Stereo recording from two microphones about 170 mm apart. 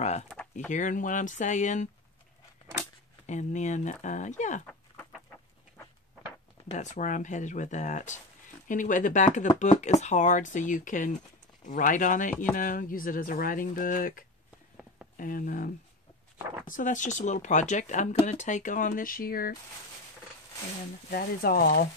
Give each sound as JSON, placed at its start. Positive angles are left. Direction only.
{"t": 0.7, "sound": "speech", "side_deg": 50}
{"t": 3.3, "sound": "speech", "side_deg": 45}
{"t": 6.7, "sound": "speech", "side_deg": 45}
{"t": 21.1, "sound": "speech", "side_deg": 60}